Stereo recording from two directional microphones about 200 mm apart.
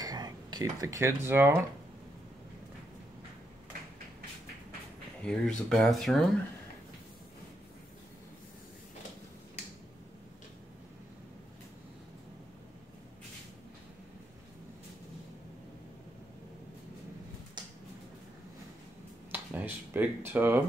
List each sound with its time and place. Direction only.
0.0 s speech: 20° right (ahead or behind)
5.2 s speech: 5° left (ahead or behind)
17.6 s a sound: 20° right (ahead or behind)
19.3 s speech: 10° right (ahead or behind)